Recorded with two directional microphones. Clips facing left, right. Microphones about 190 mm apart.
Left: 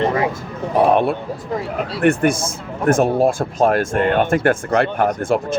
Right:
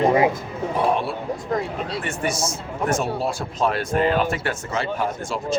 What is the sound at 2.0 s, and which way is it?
Speech, 55° left (ahead or behind).